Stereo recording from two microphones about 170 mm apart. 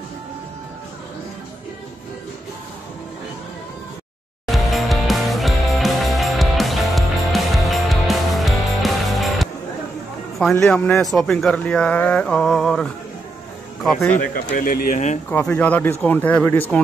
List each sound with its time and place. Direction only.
4.5 s music: centre (ahead or behind)
10.5 s speech: 5° left (ahead or behind)
14.5 s speech: 60° left (ahead or behind)
15.2 s speech: 10° left (ahead or behind)